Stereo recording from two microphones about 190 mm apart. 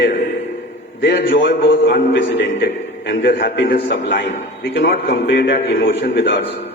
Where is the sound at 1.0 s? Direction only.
55° left (ahead or behind).